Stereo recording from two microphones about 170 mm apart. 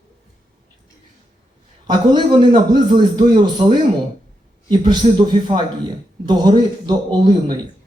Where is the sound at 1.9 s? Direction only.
25° right (ahead or behind).